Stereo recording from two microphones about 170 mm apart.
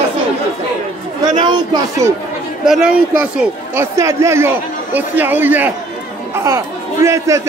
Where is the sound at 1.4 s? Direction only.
25° right (ahead or behind).